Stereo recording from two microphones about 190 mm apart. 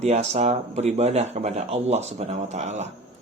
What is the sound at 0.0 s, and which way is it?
Speech, 35° right (ahead or behind).